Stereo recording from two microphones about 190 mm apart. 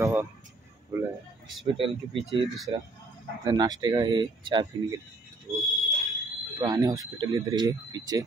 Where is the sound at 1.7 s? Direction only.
30° right (ahead or behind).